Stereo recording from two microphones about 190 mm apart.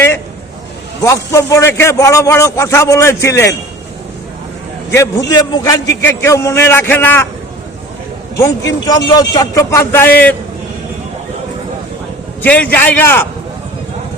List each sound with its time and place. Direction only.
1.0 s a man's voice: 15° left (ahead or behind)
4.9 s a man's voice: 20° left (ahead or behind)
8.4 s a man's voice: 20° left (ahead or behind)
12.4 s a man's voice: 10° left (ahead or behind)